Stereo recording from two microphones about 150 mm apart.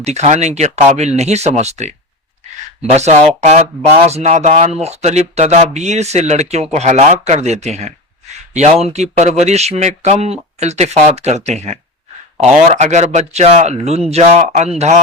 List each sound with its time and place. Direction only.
0.0 s speech: 50° right (ahead or behind)
2.9 s speech: 45° right (ahead or behind)